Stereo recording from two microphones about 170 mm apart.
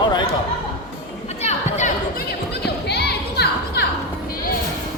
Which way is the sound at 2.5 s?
75° left (ahead or behind).